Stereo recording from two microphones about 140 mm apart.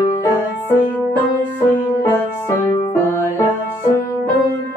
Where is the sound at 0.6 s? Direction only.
15° left (ahead or behind).